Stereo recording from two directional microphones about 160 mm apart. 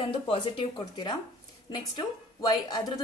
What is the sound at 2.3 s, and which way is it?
Speech, 25° left (ahead or behind).